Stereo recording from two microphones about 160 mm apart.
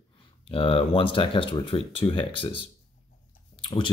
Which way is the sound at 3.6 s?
30° left (ahead or behind).